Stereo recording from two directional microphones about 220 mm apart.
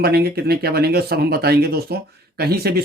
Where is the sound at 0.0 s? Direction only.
45° right (ahead or behind).